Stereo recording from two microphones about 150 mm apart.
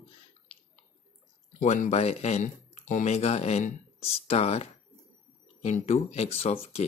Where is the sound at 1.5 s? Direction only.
55° left (ahead or behind).